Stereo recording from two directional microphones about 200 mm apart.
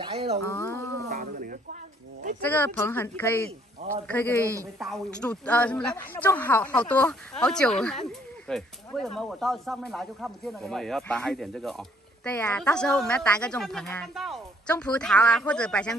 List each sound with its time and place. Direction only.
0.0 s speech: 30° right (ahead or behind)
0.5 s speech: 10° left (ahead or behind)
1.0 s speech: 45° right (ahead or behind)
2.4 s speech: 10° left (ahead or behind)
3.4 s a man's voice: 35° right (ahead or behind)
4.1 s speech: 10° left (ahead or behind)